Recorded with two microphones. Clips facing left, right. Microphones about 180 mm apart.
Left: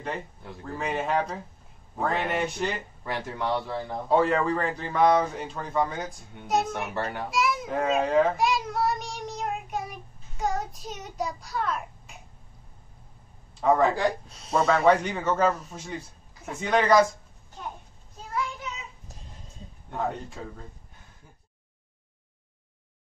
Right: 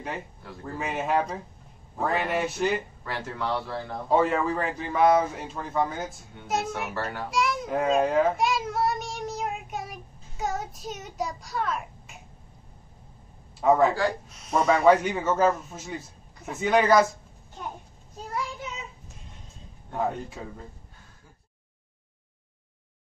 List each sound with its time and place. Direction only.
0.7 s a man's voice: 5° right (ahead or behind)
3.0 s a man's voice: 20° left (ahead or behind)
4.1 s a man's voice: 5° right (ahead or behind)
6.7 s speech: 20° left (ahead or behind)
7.2 s a child's voice: centre (ahead or behind)
13.6 s a man's voice: 5° right (ahead or behind)
13.9 s speech: 20° left (ahead or behind)
14.7 s a man's voice: 5° right (ahead or behind)
19.9 s a man's voice: centre (ahead or behind)